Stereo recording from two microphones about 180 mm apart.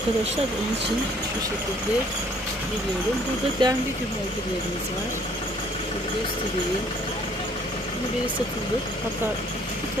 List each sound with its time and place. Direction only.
3.6 s speech: 25° right (ahead or behind)